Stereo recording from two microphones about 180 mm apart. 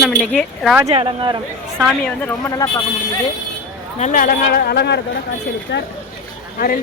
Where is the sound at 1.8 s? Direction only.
Centre (ahead or behind); by 2.7 s 20° left (ahead or behind).